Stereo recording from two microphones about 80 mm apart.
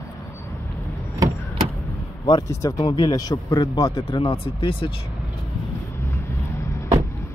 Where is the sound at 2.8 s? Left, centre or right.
Left.